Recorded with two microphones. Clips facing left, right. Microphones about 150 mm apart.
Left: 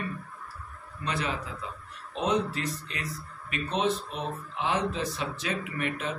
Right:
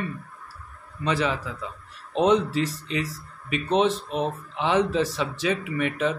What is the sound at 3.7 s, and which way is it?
Speech, 75° right (ahead or behind).